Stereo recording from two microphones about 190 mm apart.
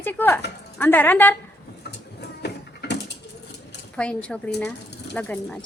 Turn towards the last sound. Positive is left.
turn(degrees=10)  # may be behind; listen again after turning